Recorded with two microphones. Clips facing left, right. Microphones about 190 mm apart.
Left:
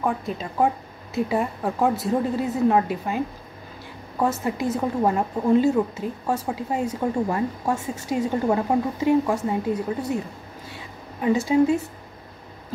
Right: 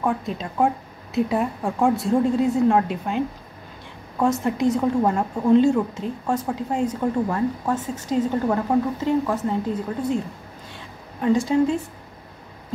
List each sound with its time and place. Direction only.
0.0 s speech: centre (ahead or behind)
11.1 s speech: 5° left (ahead or behind)